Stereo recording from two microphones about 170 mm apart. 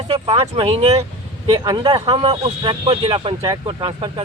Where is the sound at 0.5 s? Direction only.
30° right (ahead or behind).